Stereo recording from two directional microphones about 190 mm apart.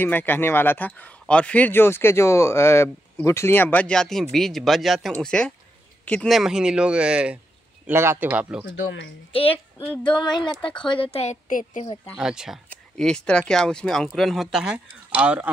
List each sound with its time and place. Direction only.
0.0 s speech: 10° left (ahead or behind); by 8.6 s 5° right (ahead or behind)
8.6 s speech: 75° left (ahead or behind)
9.3 s speech: 30° left (ahead or behind)
11.4 s a woman's voice: 45° left (ahead or behind)
12.2 s speech: 5° right (ahead or behind)